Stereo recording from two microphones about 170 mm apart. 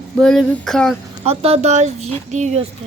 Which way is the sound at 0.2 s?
5° left (ahead or behind).